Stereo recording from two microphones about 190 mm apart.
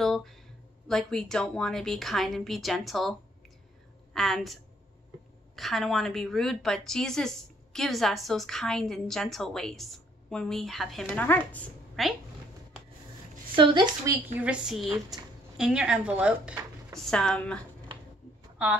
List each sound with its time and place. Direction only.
0.0 s a sound: centre (ahead or behind)
0.8 s a woman's voice: 5° left (ahead or behind)
5.6 s a woman's voice: centre (ahead or behind)
13.6 s speech: 25° right (ahead or behind)
14.1 s a woman's voice: 10° right (ahead or behind)